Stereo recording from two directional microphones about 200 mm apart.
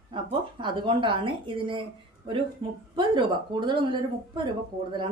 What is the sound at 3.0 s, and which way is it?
A woman's voice, 25° right (ahead or behind).